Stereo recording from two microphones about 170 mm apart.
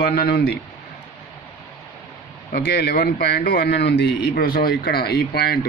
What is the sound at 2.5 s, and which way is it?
A man's voice, 70° left (ahead or behind).